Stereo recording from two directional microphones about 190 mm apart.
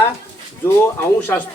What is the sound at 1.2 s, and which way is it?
Speech, 10° left (ahead or behind).